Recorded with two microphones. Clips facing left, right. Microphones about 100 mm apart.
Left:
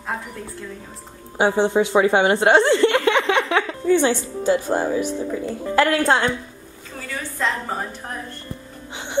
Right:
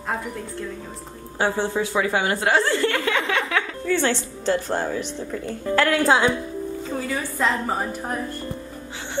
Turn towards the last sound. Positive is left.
turn(degrees=-10)  # may be behind; listen again after turning